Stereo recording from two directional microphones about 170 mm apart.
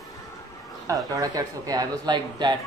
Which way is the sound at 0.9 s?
20° right (ahead or behind).